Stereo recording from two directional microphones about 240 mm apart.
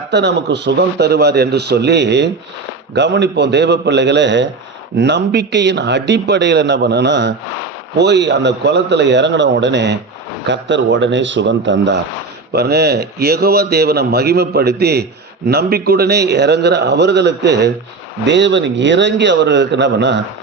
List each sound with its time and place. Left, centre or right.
0.1 s a man's voice: right